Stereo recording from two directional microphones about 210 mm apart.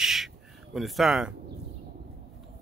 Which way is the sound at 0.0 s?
Centre (ahead or behind).